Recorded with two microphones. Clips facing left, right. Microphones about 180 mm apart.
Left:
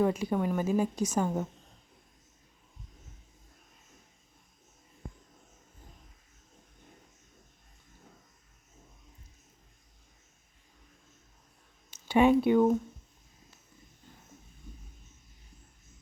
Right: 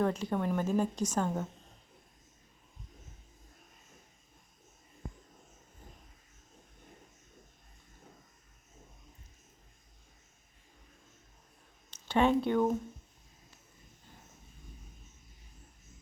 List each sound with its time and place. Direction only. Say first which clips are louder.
0.0 s a woman's voice: left 3 dB; 10° left (ahead or behind)
11.9 s speech: left 4 dB; 10° left (ahead or behind)